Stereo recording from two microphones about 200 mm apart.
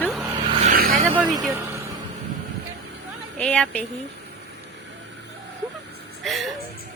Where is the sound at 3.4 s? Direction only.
5° left (ahead or behind).